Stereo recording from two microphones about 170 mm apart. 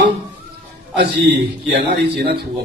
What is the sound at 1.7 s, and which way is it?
Speech, 70° right (ahead or behind).